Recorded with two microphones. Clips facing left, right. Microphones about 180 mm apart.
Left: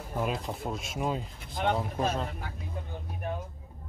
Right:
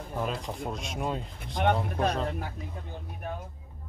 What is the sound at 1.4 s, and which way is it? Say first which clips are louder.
Speech: right 4 dB; 55° right (ahead or behind).